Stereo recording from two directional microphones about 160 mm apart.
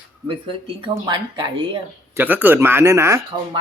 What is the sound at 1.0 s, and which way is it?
Speech, 30° right (ahead or behind).